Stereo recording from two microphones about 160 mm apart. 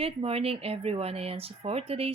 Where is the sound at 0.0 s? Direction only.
40° right (ahead or behind).